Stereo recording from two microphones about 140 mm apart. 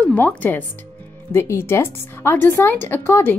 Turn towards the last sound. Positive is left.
turn(degrees=15)  # may be behind; listen again after turning